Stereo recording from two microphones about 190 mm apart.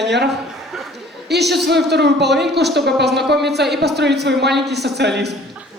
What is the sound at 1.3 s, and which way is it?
Speech, 60° right (ahead or behind).